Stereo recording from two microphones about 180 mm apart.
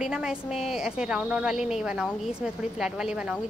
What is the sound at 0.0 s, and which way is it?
Speech, 5° right (ahead or behind).